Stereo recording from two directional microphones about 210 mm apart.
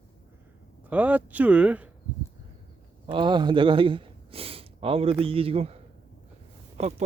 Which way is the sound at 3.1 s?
20° right (ahead or behind).